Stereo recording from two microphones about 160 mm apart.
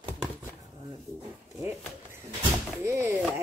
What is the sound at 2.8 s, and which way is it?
Speech, 15° right (ahead or behind).